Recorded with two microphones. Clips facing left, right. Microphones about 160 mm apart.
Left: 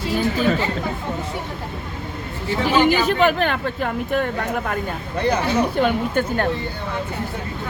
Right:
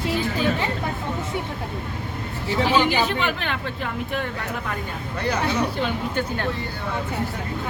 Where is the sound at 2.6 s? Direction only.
45° left (ahead or behind).